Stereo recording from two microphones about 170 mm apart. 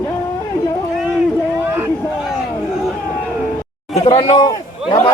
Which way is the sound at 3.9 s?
30° left (ahead or behind).